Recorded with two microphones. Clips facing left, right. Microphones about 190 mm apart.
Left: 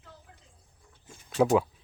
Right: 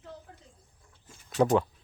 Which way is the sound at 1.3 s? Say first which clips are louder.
Left 1 dB; 5° left (ahead or behind).